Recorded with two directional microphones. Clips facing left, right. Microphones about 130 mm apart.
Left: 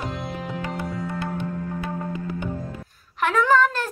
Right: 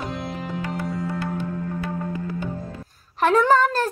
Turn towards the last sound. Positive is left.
turn(degrees=-35)  # may be behind; listen again after turning